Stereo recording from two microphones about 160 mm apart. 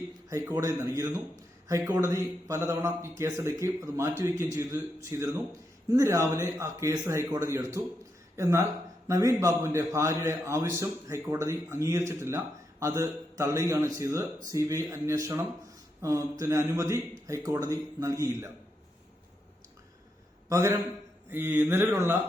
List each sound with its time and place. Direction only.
0.3 s a man's voice: 20° right (ahead or behind)
20.5 s speech: 15° right (ahead or behind)